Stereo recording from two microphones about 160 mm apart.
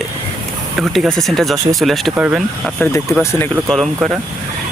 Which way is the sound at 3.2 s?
15° left (ahead or behind).